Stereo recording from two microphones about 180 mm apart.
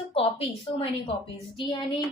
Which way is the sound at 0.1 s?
30° left (ahead or behind).